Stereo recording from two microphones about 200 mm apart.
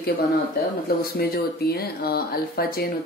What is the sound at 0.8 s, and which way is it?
Speech, 50° left (ahead or behind).